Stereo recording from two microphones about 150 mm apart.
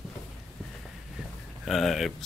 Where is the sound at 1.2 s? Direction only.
5° right (ahead or behind).